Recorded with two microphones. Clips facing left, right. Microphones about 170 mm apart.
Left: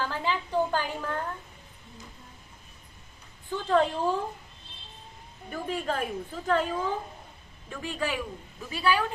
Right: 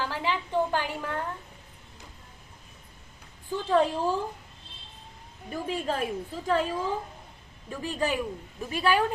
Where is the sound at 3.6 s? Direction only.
5° right (ahead or behind).